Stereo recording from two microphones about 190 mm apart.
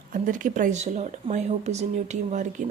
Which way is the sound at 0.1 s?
45° right (ahead or behind).